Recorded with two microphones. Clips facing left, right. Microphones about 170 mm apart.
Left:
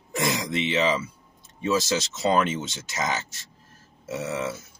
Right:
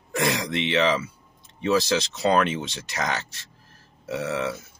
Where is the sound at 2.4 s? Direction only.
Centre (ahead or behind).